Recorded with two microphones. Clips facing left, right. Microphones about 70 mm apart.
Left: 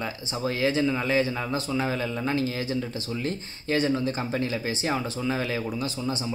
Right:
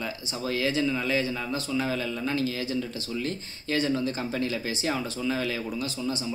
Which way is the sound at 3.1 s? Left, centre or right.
Left.